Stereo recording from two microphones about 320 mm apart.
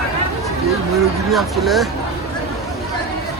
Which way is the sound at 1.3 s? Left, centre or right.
Centre.